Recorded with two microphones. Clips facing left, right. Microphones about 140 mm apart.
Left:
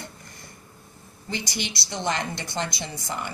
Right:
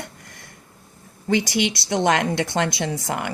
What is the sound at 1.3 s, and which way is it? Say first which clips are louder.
Speech: right 11 dB; 70° right (ahead or behind).